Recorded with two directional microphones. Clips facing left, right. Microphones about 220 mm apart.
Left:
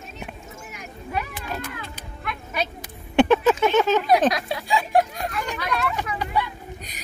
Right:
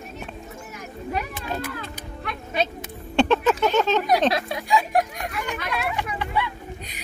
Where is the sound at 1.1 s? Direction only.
35° right (ahead or behind).